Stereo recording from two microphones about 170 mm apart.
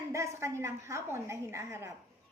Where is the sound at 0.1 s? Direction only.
15° right (ahead or behind).